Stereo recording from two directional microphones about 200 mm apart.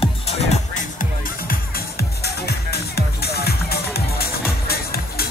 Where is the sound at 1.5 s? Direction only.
50° left (ahead or behind).